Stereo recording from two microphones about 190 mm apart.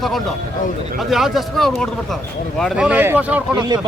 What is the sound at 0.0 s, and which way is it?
Speech, centre (ahead or behind).